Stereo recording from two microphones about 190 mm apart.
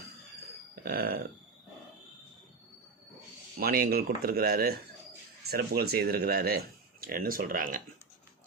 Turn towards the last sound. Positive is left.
turn(degrees=-45)  # may be behind; listen again after turning